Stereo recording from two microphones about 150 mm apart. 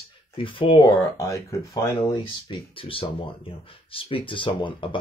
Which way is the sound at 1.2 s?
20° left (ahead or behind).